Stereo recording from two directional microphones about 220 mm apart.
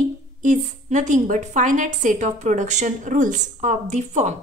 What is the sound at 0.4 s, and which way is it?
A woman's voice, 35° right (ahead or behind).